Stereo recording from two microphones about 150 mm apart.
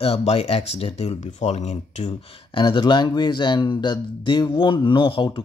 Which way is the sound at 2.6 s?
30° left (ahead or behind).